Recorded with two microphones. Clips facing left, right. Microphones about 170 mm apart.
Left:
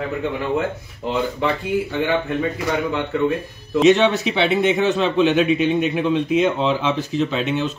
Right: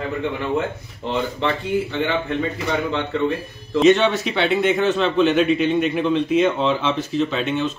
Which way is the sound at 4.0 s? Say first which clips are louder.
Left 2 dB; 15° left (ahead or behind).